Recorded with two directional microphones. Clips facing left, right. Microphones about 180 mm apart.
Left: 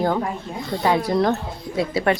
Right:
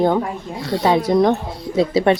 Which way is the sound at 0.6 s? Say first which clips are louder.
Right 7 dB; 80° right.